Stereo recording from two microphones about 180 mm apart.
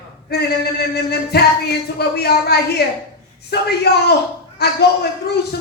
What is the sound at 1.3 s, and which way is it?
Speech, 65° left (ahead or behind).